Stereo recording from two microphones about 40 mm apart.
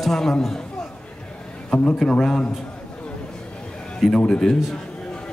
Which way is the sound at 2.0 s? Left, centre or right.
Centre.